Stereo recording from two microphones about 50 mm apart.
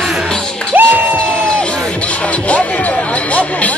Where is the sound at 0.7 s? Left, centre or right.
Right.